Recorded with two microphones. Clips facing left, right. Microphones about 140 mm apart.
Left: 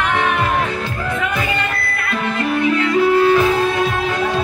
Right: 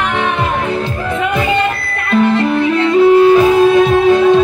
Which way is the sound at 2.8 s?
20° right (ahead or behind).